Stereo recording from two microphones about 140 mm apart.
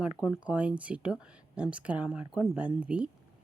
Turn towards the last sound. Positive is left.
turn(degrees=-10)  # may be behind; listen again after turning